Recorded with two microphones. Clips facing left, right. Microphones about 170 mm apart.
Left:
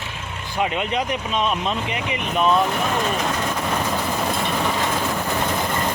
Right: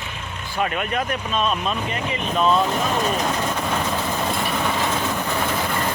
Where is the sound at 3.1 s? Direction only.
Centre (ahead or behind).